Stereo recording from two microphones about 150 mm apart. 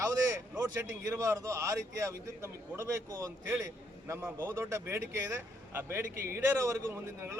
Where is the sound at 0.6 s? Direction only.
20° right (ahead or behind).